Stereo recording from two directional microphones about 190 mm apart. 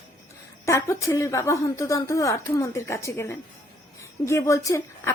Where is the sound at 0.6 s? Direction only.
15° left (ahead or behind).